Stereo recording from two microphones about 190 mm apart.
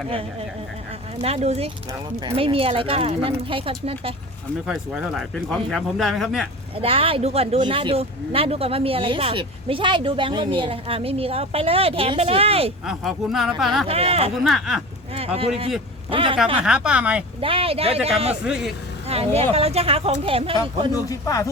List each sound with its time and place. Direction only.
1.2 s speech: 35° right (ahead or behind)
4.6 s speech: 5° right (ahead or behind)
6.7 s speech: 30° right (ahead or behind)
12.8 s speech: centre (ahead or behind)
13.8 s speech: 30° right (ahead or behind)
14.4 s speech: centre (ahead or behind)
15.1 s speech: 30° right (ahead or behind)
16.6 s speech: 5° right (ahead or behind)
17.4 s speech: 30° right (ahead or behind)
18.4 s speech: 5° right (ahead or behind)
19.0 s speech: 30° right (ahead or behind)
20.9 s speech: 20° left (ahead or behind)